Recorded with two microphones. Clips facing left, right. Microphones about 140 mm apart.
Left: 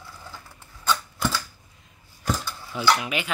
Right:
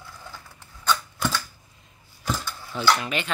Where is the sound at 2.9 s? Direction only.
10° left (ahead or behind).